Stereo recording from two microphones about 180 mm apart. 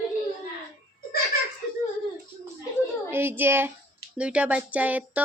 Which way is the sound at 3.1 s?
10° right (ahead or behind).